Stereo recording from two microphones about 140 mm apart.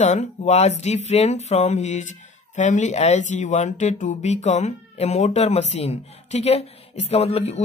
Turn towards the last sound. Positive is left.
turn(degrees=45)  # may be behind; listen again after turning